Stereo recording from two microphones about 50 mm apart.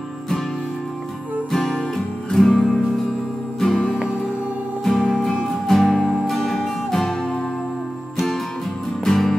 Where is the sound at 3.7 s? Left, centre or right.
Left.